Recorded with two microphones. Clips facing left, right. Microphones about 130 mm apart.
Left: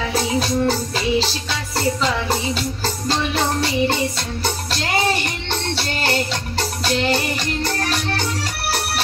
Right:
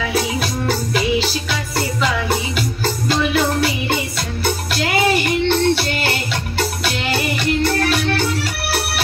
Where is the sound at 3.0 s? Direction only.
35° left (ahead or behind).